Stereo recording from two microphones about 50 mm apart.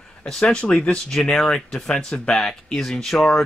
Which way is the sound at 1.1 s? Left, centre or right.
Centre.